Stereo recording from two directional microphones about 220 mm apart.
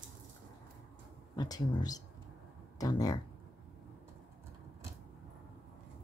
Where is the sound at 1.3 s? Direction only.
15° left (ahead or behind).